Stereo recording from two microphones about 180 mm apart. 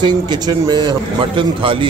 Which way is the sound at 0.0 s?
25° right (ahead or behind).